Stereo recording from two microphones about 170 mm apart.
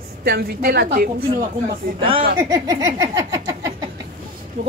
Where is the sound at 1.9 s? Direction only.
30° right (ahead or behind).